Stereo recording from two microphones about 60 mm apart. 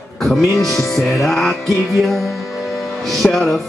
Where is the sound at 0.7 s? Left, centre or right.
Left.